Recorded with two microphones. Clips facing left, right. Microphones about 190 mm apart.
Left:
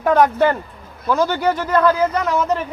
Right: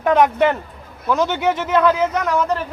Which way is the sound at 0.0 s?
Centre (ahead or behind).